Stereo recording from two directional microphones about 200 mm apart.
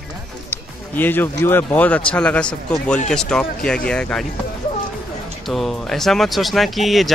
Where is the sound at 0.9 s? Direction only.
10° left (ahead or behind).